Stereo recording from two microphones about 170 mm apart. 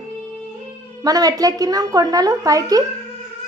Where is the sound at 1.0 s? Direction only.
20° right (ahead or behind).